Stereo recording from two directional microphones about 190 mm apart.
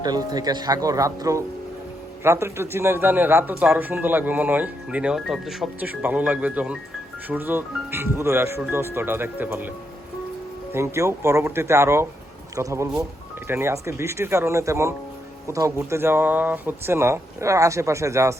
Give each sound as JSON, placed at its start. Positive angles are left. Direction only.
{"t": 0.0, "sound": "speech", "side_deg": -20}
{"t": 10.8, "sound": "speech", "side_deg": -15}